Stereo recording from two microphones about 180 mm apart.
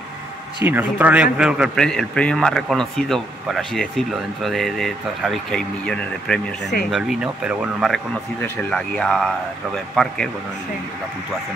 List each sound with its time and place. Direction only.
0.7 s a man's voice: 10° right (ahead or behind)
6.6 s speech: 65° left (ahead or behind)
6.9 s a man's voice: centre (ahead or behind)